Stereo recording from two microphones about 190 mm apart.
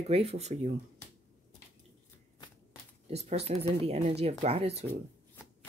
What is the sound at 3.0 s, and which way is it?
Speech, 35° right (ahead or behind).